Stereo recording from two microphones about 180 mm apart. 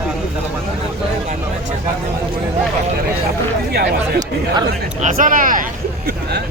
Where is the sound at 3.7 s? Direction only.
60° right (ahead or behind).